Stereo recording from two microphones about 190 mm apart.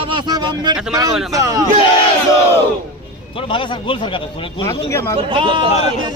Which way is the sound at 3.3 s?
25° left (ahead or behind).